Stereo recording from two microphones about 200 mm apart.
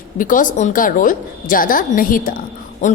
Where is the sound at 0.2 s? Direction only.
40° left (ahead or behind).